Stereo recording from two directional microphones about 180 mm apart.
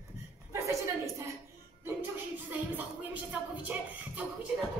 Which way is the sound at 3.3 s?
5° right (ahead or behind).